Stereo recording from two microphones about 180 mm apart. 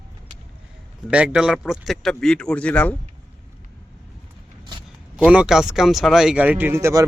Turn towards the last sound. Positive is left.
turn(degrees=-15)  # may be behind; listen again after turning